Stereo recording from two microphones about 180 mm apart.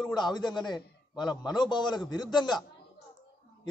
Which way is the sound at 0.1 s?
25° left (ahead or behind).